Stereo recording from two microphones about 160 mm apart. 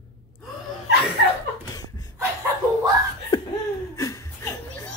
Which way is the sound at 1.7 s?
25° left (ahead or behind).